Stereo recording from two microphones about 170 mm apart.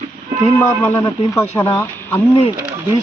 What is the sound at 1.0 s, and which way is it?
Speech, 15° left (ahead or behind).